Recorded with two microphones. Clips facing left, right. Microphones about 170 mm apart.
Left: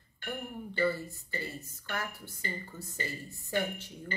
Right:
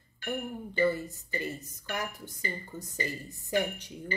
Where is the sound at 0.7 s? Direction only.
15° right (ahead or behind).